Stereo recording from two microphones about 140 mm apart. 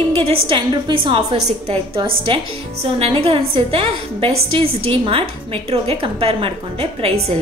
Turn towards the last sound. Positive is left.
turn(degrees=-45)  # may be behind; listen again after turning